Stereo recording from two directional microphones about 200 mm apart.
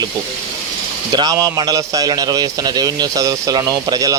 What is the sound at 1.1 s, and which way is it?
A man's voice, 20° right (ahead or behind).